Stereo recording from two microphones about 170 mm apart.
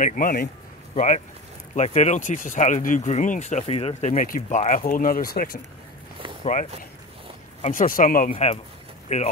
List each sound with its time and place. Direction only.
0.0 s a man's voice: 55° left (ahead or behind)
6.4 s speech: 50° left (ahead or behind)
8.3 s speech: 40° left (ahead or behind)